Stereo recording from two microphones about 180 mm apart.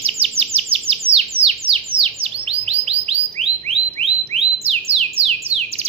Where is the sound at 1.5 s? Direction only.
30° right (ahead or behind).